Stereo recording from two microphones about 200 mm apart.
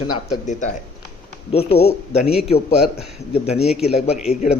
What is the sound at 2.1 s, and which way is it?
Speech, 5° right (ahead or behind).